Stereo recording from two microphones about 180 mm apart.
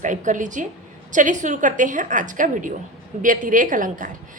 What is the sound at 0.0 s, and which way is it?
A woman's voice, 45° right (ahead or behind).